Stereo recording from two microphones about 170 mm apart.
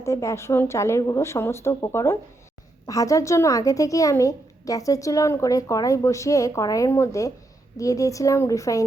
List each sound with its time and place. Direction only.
0.0 s a woman's voice: 15° left (ahead or behind)